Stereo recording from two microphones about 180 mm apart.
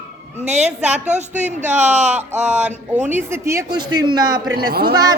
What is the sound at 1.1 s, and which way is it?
Speech, 40° right (ahead or behind).